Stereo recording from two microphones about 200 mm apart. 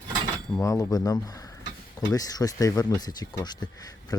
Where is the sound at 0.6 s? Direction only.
15° left (ahead or behind).